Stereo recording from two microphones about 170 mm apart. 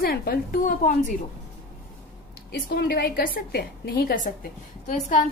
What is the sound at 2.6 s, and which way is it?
A woman's voice, 70° left (ahead or behind).